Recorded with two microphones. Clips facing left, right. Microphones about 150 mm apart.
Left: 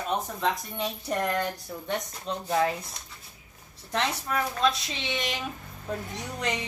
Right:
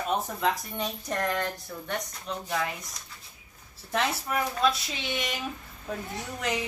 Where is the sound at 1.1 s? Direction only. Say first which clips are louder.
Left 2 dB; 10° left (ahead or behind).